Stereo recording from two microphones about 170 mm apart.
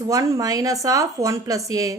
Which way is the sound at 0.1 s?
20° right (ahead or behind).